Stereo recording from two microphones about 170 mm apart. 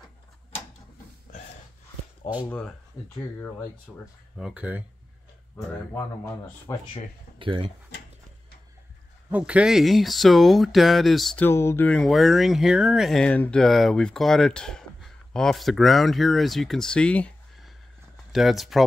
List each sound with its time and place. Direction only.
3.9 s speech: 10° left (ahead or behind)
4.4 s speech: 5° right (ahead or behind)
6.7 s speech: 20° left (ahead or behind)
7.3 s speech: 30° right (ahead or behind)
9.3 s speech: 5° right (ahead or behind)